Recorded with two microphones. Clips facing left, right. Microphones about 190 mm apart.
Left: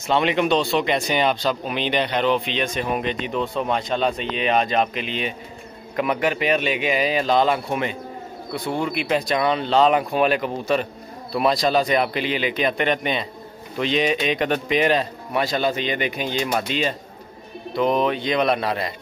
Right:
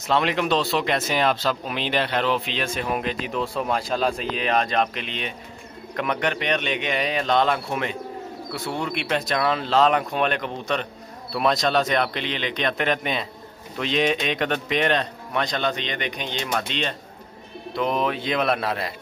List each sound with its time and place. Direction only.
0.0 s speech: centre (ahead or behind)